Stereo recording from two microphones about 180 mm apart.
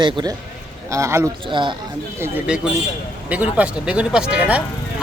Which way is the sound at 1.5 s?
25° right (ahead or behind).